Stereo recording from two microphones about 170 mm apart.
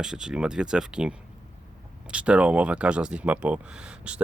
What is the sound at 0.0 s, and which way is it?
Speech, 5° right (ahead or behind).